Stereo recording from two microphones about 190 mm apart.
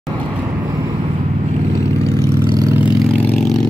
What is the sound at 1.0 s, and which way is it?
Vehicle, 35° right (ahead or behind).